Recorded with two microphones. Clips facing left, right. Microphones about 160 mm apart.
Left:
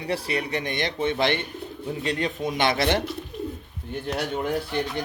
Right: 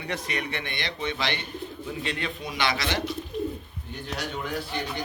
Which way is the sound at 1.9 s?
40° left (ahead or behind).